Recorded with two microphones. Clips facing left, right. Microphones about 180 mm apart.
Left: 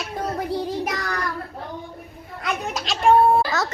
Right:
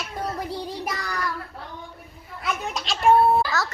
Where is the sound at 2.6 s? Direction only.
Centre (ahead or behind).